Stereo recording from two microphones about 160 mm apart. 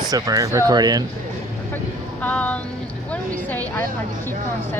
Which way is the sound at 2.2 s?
10° left (ahead or behind).